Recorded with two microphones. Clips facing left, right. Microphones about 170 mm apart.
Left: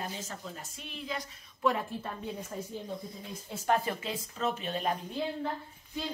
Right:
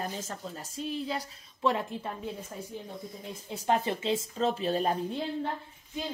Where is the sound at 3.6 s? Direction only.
20° right (ahead or behind).